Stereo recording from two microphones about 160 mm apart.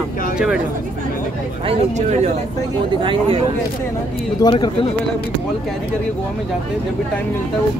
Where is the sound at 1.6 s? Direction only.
45° right (ahead or behind).